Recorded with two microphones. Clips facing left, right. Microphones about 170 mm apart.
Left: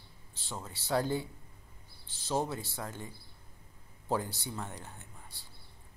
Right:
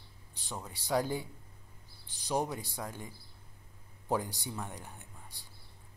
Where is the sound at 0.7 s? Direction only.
15° right (ahead or behind).